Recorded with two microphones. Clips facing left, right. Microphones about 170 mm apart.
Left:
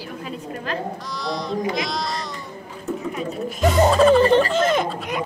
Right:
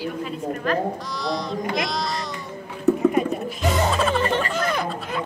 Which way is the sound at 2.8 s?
65° right (ahead or behind).